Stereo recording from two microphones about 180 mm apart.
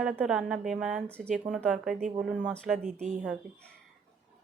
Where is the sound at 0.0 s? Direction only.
Centre (ahead or behind).